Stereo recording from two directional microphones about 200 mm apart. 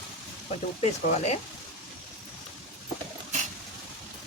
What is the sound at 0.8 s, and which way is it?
Speech, 35° left (ahead or behind).